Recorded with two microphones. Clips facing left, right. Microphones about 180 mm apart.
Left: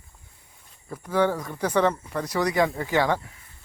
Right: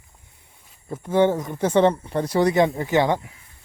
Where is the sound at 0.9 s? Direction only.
25° right (ahead or behind).